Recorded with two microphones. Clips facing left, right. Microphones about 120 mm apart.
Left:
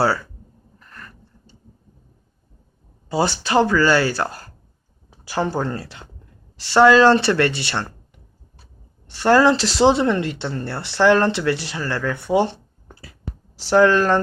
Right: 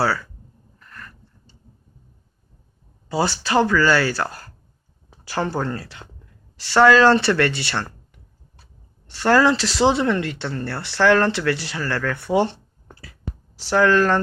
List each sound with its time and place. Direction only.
3.1 s speech: 20° left (ahead or behind)
5.2 s speech: 15° left (ahead or behind)
9.0 s speech: 15° left (ahead or behind)
13.6 s speech: 25° left (ahead or behind)